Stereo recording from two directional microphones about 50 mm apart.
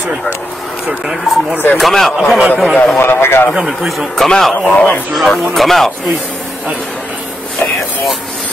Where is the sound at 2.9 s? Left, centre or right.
Left.